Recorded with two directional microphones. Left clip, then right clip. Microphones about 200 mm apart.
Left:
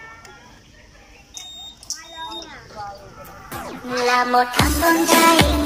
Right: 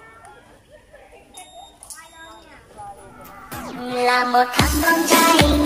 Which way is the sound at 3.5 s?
Centre (ahead or behind).